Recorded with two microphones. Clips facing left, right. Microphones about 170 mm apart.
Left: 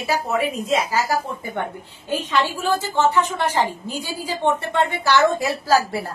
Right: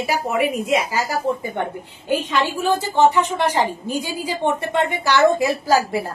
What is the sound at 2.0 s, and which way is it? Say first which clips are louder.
A woman's voice: right 1 dB; 15° right (ahead or behind).